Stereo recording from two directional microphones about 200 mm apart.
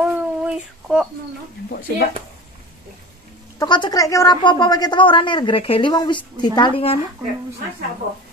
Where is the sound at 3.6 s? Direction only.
20° left (ahead or behind).